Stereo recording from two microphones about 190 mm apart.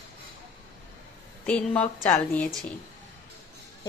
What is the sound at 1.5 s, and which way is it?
A woman's voice, 5° left (ahead or behind).